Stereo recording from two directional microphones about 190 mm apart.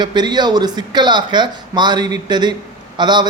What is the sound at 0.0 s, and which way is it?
A man's voice, 20° right (ahead or behind).